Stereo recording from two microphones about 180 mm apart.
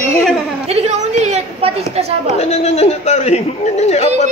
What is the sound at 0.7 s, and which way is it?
A woman's voice, 35° right (ahead or behind).